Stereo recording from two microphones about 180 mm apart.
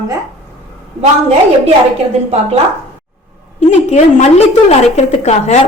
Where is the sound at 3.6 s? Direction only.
40° left (ahead or behind).